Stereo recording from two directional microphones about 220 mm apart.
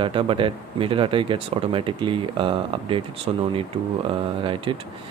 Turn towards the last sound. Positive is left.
turn(degrees=-25)  # may be behind; listen again after turning